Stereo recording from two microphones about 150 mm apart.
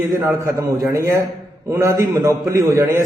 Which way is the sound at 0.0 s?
15° right (ahead or behind).